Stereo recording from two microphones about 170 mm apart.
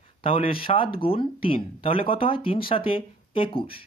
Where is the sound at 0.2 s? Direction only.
35° left (ahead or behind).